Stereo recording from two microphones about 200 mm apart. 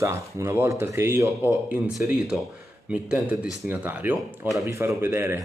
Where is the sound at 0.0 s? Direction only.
15° right (ahead or behind).